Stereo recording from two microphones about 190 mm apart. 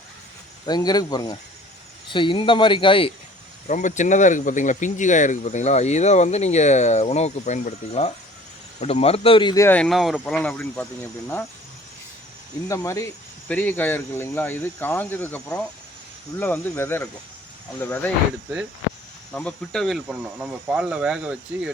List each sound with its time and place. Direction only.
0.6 s speech: 20° left (ahead or behind)
3.7 s speech: 40° left (ahead or behind); by 9.6 s 25° left (ahead or behind)
9.6 s speech: 5° left (ahead or behind)
12.6 s speech: 15° left (ahead or behind)
19.3 s speech: 5° left (ahead or behind)